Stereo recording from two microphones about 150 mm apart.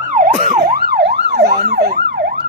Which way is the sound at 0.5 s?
70° right (ahead or behind).